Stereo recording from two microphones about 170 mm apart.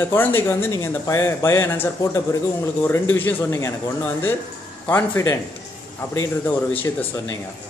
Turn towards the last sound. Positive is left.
turn(degrees=15)  # may be behind; listen again after turning